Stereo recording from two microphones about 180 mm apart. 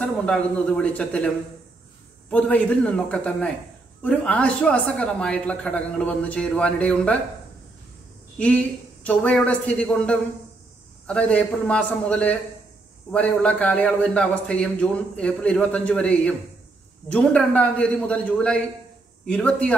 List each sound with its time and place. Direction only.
0.0 s a man's voice: 5° left (ahead or behind)
8.4 s a man's voice: 5° left (ahead or behind)